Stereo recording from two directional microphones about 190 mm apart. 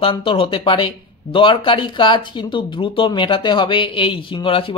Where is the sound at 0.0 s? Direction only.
25° left (ahead or behind).